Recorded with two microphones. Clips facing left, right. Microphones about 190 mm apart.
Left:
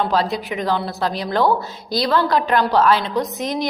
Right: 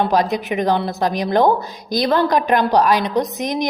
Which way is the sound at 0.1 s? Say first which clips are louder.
Right 3 dB; 15° right (ahead or behind).